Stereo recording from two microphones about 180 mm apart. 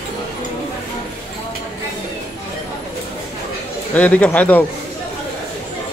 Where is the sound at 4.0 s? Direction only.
5° left (ahead or behind).